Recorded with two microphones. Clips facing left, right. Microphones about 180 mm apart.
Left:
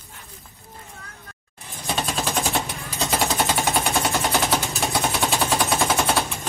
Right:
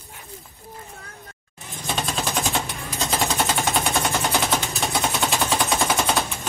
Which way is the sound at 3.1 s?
10° left (ahead or behind).